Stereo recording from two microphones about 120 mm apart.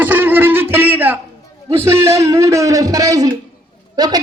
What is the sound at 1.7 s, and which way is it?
Speech, 20° right (ahead or behind).